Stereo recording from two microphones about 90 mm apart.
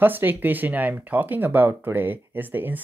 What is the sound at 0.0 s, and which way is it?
Speech, 20° right (ahead or behind).